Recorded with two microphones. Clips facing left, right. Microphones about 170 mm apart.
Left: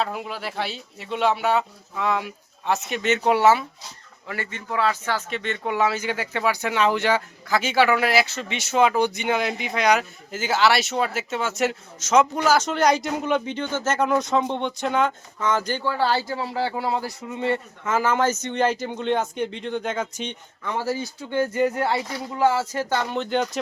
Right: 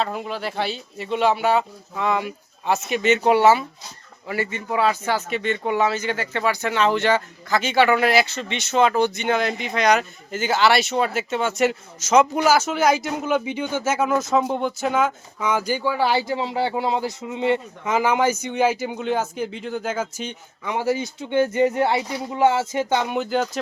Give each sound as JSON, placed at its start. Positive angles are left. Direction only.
{"t": 0.0, "sound": "speech", "side_deg": 5}
{"t": 20.7, "sound": "speech", "side_deg": -15}